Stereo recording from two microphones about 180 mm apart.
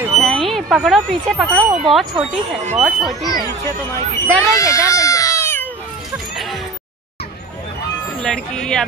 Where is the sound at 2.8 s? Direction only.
Centre (ahead or behind).